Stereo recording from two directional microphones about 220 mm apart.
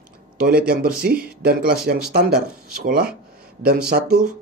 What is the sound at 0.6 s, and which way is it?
Speech, 45° right (ahead or behind).